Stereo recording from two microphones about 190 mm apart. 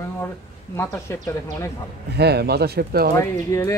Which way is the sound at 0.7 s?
15° left (ahead or behind).